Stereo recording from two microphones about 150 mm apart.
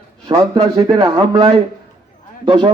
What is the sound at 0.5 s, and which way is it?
Speech, 30° right (ahead or behind).